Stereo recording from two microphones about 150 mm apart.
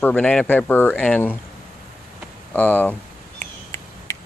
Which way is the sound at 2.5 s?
10° left (ahead or behind).